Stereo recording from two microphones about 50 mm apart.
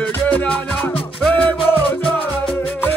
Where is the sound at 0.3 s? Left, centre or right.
Left.